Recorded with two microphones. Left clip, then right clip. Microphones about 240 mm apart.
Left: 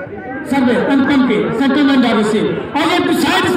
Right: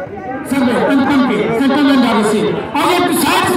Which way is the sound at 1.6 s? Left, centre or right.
Right.